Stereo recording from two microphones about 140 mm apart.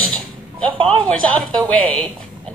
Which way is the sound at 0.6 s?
40° right (ahead or behind).